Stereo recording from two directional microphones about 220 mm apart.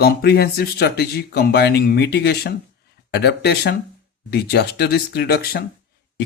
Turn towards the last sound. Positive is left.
turn(degrees=45)  # may be behind; listen again after turning